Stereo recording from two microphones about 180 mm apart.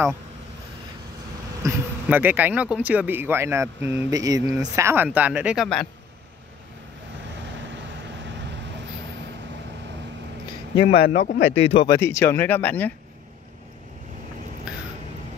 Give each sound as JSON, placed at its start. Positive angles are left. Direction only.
{"t": 1.6, "sound": "speech", "side_deg": -10}
{"t": 10.8, "sound": "speech", "side_deg": 30}
{"t": 11.9, "sound": "speech", "side_deg": 15}